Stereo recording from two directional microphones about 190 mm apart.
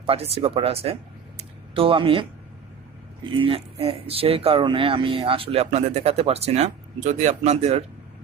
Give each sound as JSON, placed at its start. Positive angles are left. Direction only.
{"t": 0.0, "sound": "speech", "side_deg": -30}
{"t": 1.4, "sound": "a sound", "side_deg": -30}
{"t": 3.3, "sound": "speech", "side_deg": -30}